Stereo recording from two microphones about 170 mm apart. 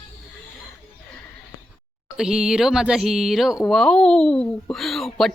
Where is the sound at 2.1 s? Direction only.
5° right (ahead or behind).